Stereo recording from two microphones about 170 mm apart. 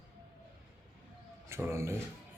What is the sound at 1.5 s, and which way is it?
Speech, 15° right (ahead or behind).